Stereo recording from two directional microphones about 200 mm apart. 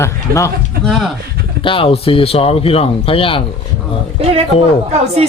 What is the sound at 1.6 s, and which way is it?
Speech, 25° left (ahead or behind).